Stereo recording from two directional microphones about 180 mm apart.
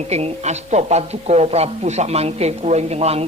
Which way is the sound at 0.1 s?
35° right (ahead or behind).